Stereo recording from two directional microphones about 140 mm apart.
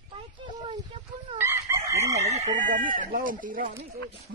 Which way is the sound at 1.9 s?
55° right (ahead or behind).